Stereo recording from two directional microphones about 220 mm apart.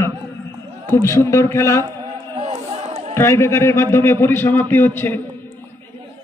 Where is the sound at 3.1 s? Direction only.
10° left (ahead or behind).